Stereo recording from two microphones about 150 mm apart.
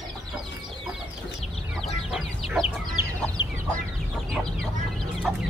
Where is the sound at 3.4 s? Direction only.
30° left (ahead or behind).